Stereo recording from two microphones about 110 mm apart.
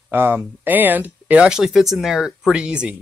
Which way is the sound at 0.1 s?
15° right (ahead or behind).